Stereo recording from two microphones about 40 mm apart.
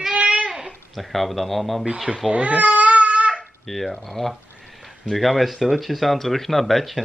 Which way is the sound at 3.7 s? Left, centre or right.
Centre.